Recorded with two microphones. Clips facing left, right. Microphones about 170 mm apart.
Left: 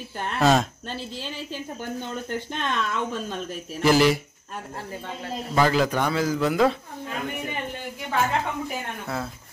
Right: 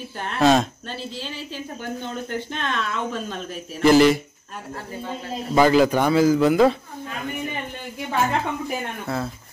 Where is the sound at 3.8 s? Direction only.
5° left (ahead or behind).